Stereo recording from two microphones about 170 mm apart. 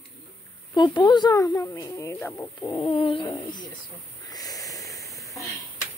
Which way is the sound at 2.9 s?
30° left (ahead or behind).